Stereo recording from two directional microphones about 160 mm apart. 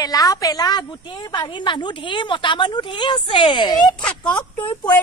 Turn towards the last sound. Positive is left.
turn(degrees=30)  # may be behind; listen again after turning